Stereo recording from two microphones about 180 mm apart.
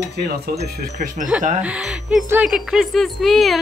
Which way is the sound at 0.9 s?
45° right (ahead or behind).